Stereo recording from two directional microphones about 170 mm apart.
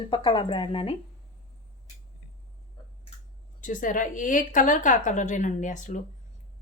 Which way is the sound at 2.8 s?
25° left (ahead or behind).